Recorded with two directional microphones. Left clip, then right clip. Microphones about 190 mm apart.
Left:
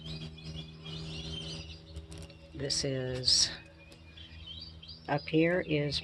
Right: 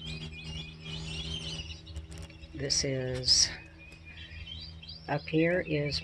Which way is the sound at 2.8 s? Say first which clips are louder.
Right 1 dB; 5° right (ahead or behind).